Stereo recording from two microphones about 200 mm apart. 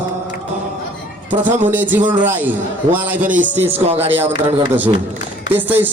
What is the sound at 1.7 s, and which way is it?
Speech, 10° right (ahead or behind).